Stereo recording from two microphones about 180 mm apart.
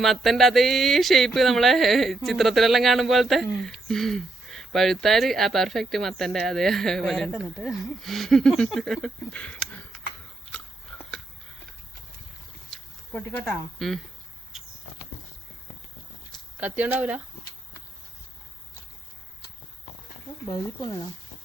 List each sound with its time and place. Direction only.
0.0 s speech: centre (ahead or behind)
10.5 s a sound: 5° left (ahead or behind)
12.7 s speech: 5° left (ahead or behind)
16.3 s speech: 10° right (ahead or behind)
20.8 s speech: 20° left (ahead or behind)